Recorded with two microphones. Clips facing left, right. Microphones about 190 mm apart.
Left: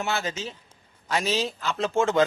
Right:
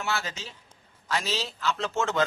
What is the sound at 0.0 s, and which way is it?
A man's voice, 20° left (ahead or behind).